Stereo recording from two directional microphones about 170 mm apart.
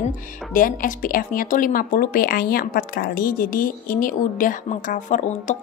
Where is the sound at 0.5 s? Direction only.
55° left (ahead or behind).